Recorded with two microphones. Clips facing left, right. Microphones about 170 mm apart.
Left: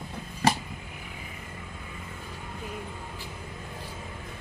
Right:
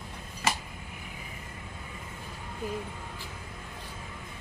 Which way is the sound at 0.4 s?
40° left (ahead or behind).